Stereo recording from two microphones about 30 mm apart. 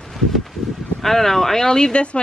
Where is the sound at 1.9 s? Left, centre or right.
Left.